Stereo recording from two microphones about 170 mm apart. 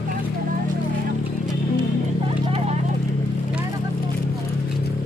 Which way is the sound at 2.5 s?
35° right (ahead or behind).